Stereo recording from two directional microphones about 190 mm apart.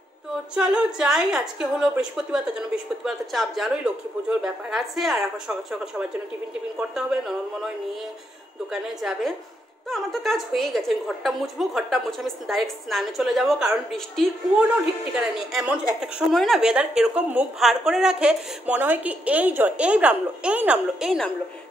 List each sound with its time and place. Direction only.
0.6 s a woman's voice: 5° right (ahead or behind)
9.8 s a woman's voice: centre (ahead or behind)